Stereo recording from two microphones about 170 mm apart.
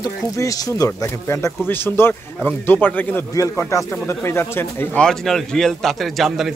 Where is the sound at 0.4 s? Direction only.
20° left (ahead or behind).